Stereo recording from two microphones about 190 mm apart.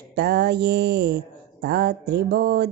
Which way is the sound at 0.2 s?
60° right (ahead or behind).